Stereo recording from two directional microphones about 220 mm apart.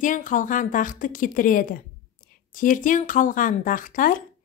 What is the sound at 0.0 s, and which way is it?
A woman's voice, 35° left (ahead or behind).